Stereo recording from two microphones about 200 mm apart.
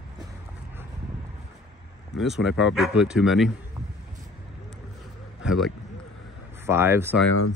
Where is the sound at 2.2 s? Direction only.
Centre (ahead or behind).